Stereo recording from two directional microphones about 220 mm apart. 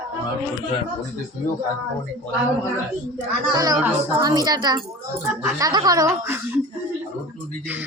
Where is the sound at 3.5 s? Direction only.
15° right (ahead or behind).